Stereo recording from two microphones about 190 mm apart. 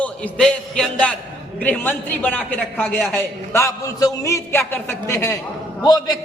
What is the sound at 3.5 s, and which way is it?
A man's voice, 15° left (ahead or behind).